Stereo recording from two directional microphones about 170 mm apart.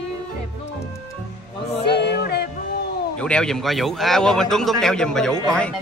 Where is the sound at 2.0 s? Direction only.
75° left (ahead or behind).